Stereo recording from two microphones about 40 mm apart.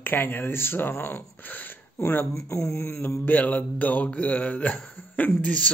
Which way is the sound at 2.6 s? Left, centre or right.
Left.